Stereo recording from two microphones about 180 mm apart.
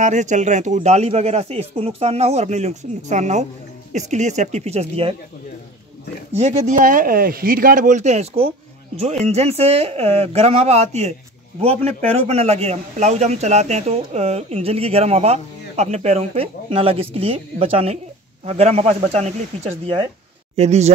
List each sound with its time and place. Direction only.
0.0 s a man's voice: 40° right (ahead or behind)
6.3 s a man's voice: 40° right (ahead or behind)
12.2 s a man's voice: 35° right (ahead or behind)
20.5 s a man's voice: 35° right (ahead or behind)